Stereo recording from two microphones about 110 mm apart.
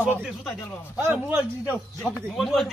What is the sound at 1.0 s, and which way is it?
Speech, 15° right (ahead or behind).